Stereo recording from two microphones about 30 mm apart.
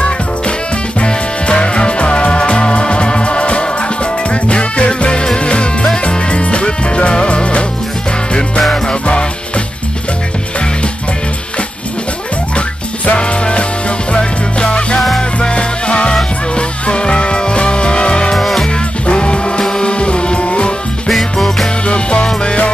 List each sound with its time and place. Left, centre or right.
1.0 s music: left
12.5 s music: left
13.2 s music: left
18.3 s music: centre
19.0 s music: left
21.1 s music: centre
21.8 s music: left